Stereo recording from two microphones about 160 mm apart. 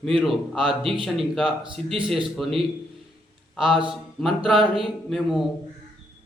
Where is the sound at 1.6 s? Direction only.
30° right (ahead or behind).